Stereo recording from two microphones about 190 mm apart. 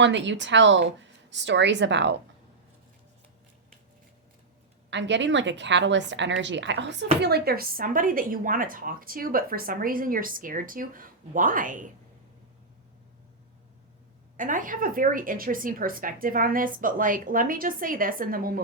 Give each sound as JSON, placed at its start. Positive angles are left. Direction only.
{"t": 0.0, "sound": "a woman's voice", "side_deg": -70}
{"t": 4.9, "sound": "a woman's voice", "side_deg": -70}
{"t": 7.2, "sound": "speech", "side_deg": -55}
{"t": 14.3, "sound": "speech", "side_deg": -45}